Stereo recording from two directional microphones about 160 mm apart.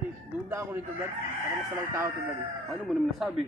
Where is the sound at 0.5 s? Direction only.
15° right (ahead or behind).